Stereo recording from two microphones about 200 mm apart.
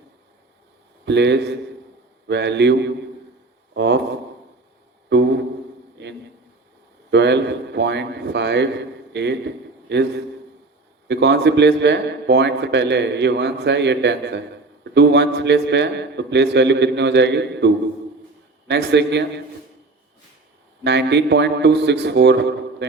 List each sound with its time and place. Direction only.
1.0 s a man's voice: 60° right (ahead or behind)
3.8 s a man's voice: 60° right (ahead or behind)
5.0 s a sound: 60° right (ahead or behind)
7.1 s a man's voice: 60° right (ahead or behind)
9.9 s a man's voice: 60° right (ahead or behind)
18.7 s a man's voice: 60° right (ahead or behind)
20.8 s a man's voice: 60° right (ahead or behind)